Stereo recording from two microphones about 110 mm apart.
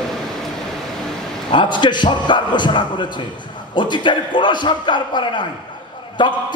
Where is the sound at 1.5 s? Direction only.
45° left (ahead or behind).